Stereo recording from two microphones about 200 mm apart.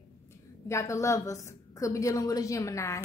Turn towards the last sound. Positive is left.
turn(degrees=15)  # may be behind; listen again after turning